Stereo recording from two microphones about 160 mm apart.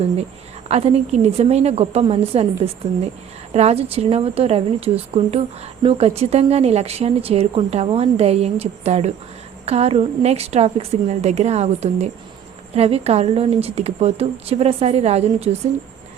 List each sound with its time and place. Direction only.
0.7 s speech: 40° right (ahead or behind)
3.5 s a woman's voice: 40° right (ahead or behind)